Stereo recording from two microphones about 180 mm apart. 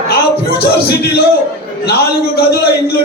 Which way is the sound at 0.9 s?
60° left (ahead or behind).